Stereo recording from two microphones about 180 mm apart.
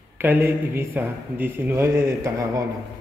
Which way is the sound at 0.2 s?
10° right (ahead or behind).